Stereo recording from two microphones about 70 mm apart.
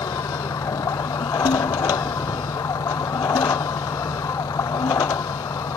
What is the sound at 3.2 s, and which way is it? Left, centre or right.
Vehicle, left.